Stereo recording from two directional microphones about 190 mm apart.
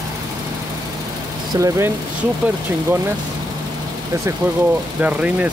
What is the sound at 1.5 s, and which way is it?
Speech, 20° right (ahead or behind).